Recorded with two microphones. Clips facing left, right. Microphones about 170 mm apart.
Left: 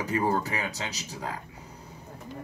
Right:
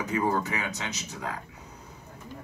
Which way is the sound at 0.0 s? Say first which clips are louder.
Even; 35° left (ahead or behind).